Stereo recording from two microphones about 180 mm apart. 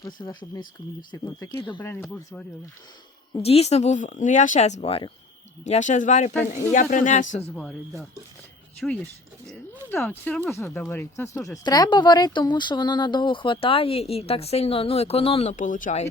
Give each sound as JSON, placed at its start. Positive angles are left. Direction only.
{"t": 0.0, "sound": "speech", "side_deg": 25}
{"t": 1.5, "sound": "speech", "side_deg": 25}
{"t": 1.8, "sound": "speech", "side_deg": 10}
{"t": 3.4, "sound": "speech", "side_deg": 35}
{"t": 7.5, "sound": "speech", "side_deg": 0}
{"t": 10.0, "sound": "speech", "side_deg": 5}